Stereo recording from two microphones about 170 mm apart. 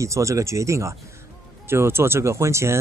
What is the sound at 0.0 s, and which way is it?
Speech, 15° right (ahead or behind).